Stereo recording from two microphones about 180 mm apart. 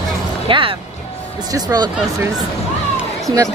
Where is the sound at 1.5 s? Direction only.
20° right (ahead or behind).